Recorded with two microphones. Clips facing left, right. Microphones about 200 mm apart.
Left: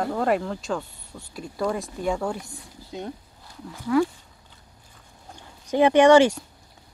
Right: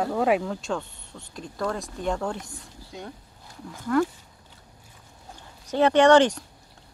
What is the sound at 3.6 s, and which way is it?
Speech, 5° left (ahead or behind).